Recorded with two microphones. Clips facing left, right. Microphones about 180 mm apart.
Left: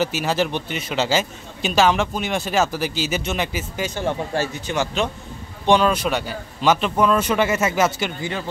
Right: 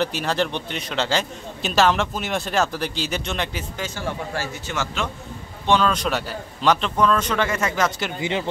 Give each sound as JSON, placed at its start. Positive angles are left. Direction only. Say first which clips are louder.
{"t": 0.0, "sound": "a man's voice", "louder": "left 2 dB", "side_deg": 5}
{"t": 3.9, "sound": "a man's voice", "louder": "left 6 dB", "side_deg": 20}
{"t": 6.0, "sound": "a man's voice", "louder": "left 2 dB", "side_deg": 0}
{"t": 8.2, "sound": "speech", "louder": "right 3 dB", "side_deg": -20}